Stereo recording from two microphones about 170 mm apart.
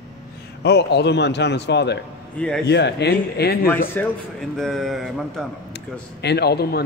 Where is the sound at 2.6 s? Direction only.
80° left.